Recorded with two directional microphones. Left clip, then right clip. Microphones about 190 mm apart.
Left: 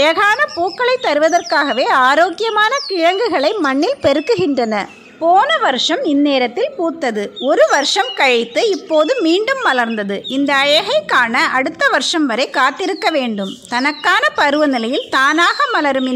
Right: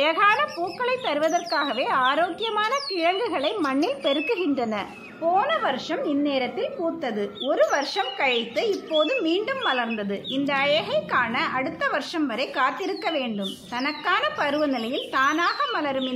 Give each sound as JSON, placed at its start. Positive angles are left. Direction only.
{"t": 0.0, "sound": "speech", "side_deg": 35}